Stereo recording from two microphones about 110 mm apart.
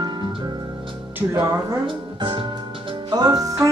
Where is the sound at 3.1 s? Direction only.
35° right (ahead or behind).